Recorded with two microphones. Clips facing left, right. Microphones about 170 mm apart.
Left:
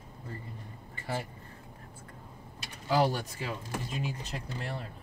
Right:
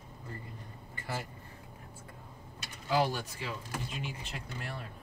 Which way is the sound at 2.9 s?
40° left (ahead or behind).